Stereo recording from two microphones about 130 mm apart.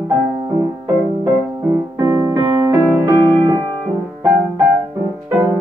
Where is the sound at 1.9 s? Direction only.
20° right (ahead or behind).